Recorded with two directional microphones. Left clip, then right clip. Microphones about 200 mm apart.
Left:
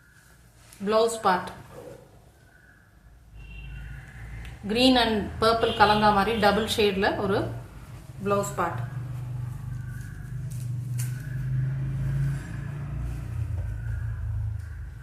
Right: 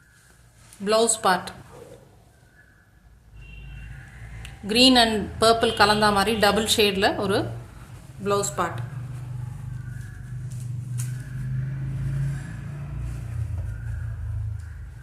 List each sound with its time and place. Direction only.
0.9 s a woman's voice: 45° right (ahead or behind)
4.6 s a woman's voice: 45° right (ahead or behind)